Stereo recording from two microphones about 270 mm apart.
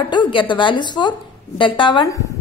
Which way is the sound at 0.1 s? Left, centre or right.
Centre.